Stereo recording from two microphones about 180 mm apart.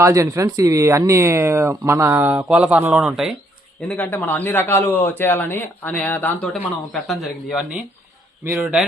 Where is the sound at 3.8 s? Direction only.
10° left (ahead or behind); by 8.9 s 5° right (ahead or behind).